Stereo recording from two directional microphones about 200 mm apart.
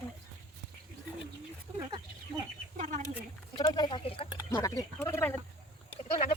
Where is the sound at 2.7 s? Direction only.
35° right (ahead or behind).